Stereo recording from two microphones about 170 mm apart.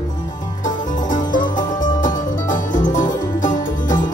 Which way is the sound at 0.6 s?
50° left (ahead or behind).